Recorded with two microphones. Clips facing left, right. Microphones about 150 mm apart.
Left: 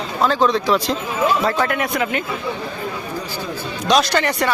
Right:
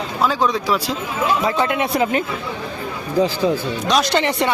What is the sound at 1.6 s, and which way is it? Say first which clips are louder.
Speech: right 2 dB; 25° right (ahead or behind).